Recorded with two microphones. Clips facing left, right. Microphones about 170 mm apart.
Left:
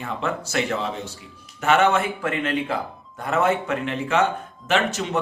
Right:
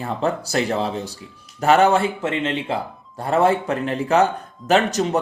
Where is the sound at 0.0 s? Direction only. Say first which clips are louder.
Right 4 dB; 35° right (ahead or behind).